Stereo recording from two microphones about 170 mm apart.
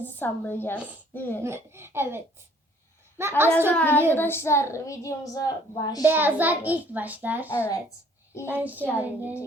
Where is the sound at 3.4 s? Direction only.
15° right (ahead or behind).